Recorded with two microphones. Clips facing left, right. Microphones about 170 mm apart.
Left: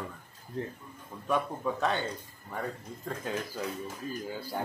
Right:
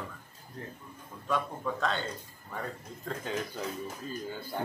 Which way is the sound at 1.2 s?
15° left (ahead or behind).